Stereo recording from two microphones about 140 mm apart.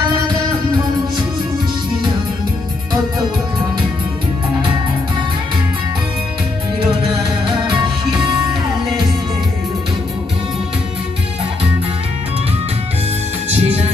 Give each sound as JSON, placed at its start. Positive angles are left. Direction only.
{"t": 13.5, "sound": "music", "side_deg": -50}